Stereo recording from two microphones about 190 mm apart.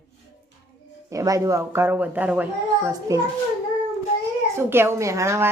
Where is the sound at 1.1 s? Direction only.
15° right (ahead or behind).